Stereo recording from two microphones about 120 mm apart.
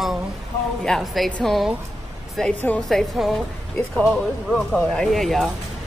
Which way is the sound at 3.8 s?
10° left (ahead or behind).